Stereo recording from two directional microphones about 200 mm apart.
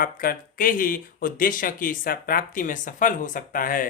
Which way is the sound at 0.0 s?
45° left (ahead or behind).